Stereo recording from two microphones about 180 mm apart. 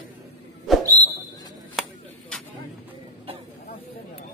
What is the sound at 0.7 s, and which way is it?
Whistle, centre (ahead or behind).